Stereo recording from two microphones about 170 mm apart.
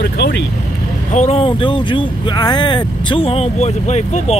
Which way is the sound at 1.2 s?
35° left (ahead or behind).